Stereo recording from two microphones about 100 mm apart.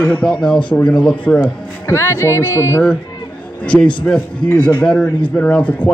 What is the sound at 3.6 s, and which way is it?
A man's voice, 10° left (ahead or behind).